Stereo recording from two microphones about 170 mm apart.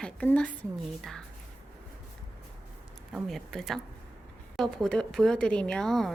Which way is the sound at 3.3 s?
Centre (ahead or behind).